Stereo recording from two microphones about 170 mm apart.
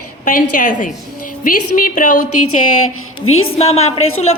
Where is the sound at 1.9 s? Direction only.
50° left (ahead or behind).